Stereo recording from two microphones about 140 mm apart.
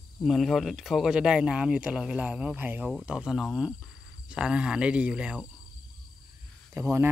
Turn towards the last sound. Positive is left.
turn(degrees=-20)  # may be behind; listen again after turning